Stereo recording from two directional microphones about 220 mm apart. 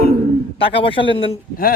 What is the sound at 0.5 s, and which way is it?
Speech, 25° left (ahead or behind).